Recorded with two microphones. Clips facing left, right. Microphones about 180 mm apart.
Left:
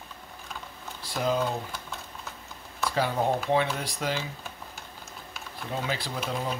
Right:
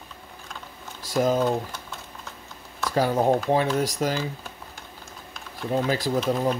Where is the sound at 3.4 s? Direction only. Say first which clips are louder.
Right 4 dB; 40° right (ahead or behind).